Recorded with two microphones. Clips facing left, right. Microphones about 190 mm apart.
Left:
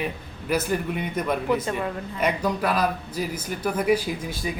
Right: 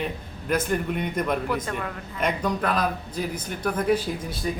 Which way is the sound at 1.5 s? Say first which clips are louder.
Left 4 dB; 20° left (ahead or behind).